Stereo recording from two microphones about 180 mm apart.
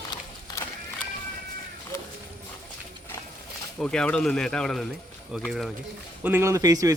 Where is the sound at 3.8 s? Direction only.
5° left (ahead or behind).